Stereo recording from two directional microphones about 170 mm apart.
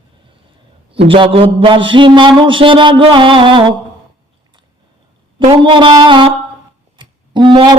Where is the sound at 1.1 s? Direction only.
35° right (ahead or behind).